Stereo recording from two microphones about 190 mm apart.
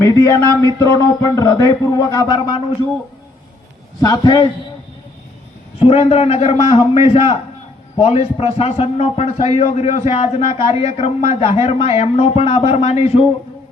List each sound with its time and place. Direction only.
0.0 s speech: 15° left (ahead or behind)
4.0 s speech: 20° left (ahead or behind)
5.8 s a man's voice: 30° left (ahead or behind)